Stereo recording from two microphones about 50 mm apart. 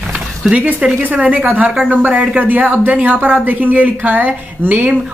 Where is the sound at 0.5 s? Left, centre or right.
Right.